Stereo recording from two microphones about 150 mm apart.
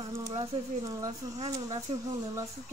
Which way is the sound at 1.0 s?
25° right (ahead or behind).